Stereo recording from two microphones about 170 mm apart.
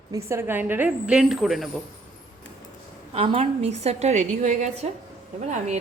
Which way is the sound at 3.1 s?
35° right (ahead or behind).